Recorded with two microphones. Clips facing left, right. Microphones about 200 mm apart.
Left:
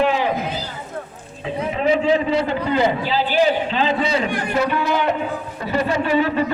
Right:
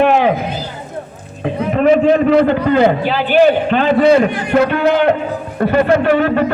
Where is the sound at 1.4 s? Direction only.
60° right (ahead or behind).